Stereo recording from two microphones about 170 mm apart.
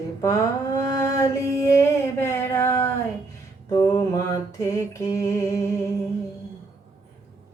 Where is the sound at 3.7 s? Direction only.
25° left (ahead or behind).